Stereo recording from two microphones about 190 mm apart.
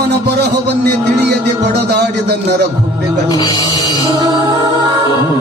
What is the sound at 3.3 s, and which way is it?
Speech, 20° left (ahead or behind).